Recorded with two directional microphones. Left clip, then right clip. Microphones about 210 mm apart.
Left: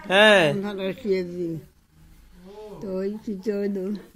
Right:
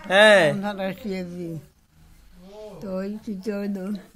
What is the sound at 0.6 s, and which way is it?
Speech, 40° right (ahead or behind).